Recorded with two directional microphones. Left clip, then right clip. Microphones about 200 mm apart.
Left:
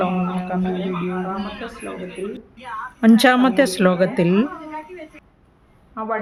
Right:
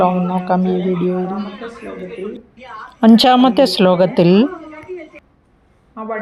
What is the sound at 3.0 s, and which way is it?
Speech, 15° right (ahead or behind).